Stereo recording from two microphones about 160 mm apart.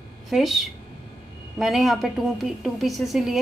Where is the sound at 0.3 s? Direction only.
Centre (ahead or behind).